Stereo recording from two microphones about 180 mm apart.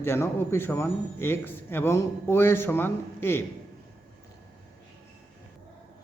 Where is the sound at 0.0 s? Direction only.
15° left (ahead or behind).